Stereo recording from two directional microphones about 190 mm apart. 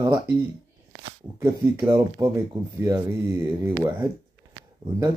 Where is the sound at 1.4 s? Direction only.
15° right (ahead or behind).